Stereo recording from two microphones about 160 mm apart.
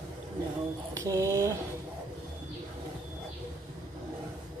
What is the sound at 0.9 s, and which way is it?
Mantra, 20° right (ahead or behind).